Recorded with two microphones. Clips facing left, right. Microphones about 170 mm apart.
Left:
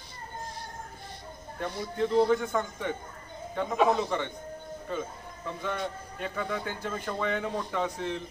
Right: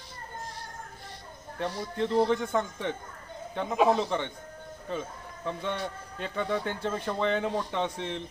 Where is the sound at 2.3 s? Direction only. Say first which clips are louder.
Even; 25° right (ahead or behind).